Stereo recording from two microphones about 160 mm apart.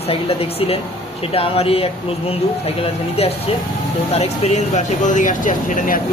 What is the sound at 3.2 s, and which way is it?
Speech, 40° left (ahead or behind).